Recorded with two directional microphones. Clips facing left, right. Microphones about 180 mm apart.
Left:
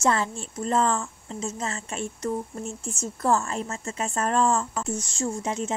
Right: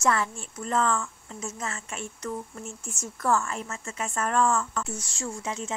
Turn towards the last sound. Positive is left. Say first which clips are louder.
# left 5 dB
turn(degrees=35)  # may be behind; listen again after turning